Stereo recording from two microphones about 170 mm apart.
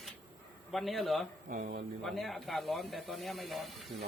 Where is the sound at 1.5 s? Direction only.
60° right (ahead or behind).